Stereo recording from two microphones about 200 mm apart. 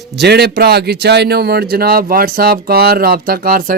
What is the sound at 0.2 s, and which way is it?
A man's voice, 55° right (ahead or behind).